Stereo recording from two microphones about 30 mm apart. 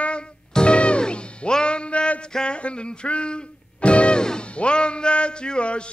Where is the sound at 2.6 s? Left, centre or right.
Left.